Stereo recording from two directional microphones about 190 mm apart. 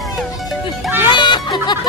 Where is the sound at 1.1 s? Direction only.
25° left (ahead or behind).